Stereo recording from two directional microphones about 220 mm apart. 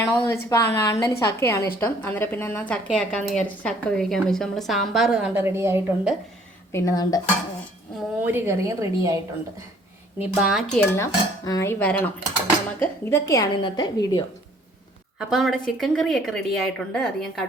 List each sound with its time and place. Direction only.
0.0 s cutlery: 10° left (ahead or behind)
1.8 s speech: 10° left (ahead or behind); by 6.1 s 10° right (ahead or behind)
6.7 s cutlery: 15° left (ahead or behind)
8.2 s a woman's voice: 10° right (ahead or behind)
10.2 s cutlery: centre (ahead or behind); by 14.3 s 20° left (ahead or behind)
15.2 s speech: centre (ahead or behind)